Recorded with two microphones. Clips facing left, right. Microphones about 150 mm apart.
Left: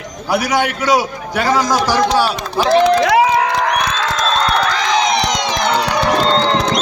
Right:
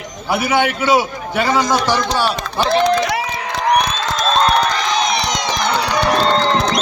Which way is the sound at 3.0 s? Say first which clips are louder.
Left 8 dB; 90° left.